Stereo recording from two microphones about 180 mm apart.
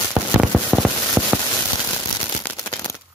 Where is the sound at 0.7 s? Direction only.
Centre (ahead or behind).